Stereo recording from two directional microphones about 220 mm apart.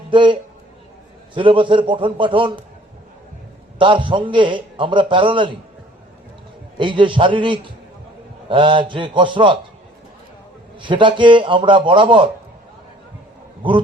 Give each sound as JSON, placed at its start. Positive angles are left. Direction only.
{"t": 0.1, "sound": "a man's voice", "side_deg": -20}
{"t": 3.8, "sound": "a man's voice", "side_deg": -20}
{"t": 6.7, "sound": "a man's voice", "side_deg": -20}
{"t": 10.8, "sound": "a man's voice", "side_deg": -20}
{"t": 13.6, "sound": "speech", "side_deg": -20}